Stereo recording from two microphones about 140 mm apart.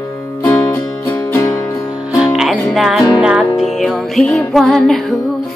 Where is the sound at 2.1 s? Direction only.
Centre (ahead or behind).